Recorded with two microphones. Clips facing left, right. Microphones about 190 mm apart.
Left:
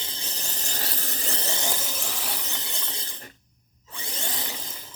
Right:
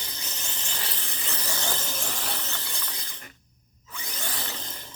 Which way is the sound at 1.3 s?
25° left (ahead or behind).